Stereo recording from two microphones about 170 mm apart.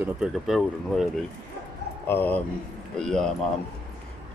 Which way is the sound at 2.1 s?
10° left (ahead or behind).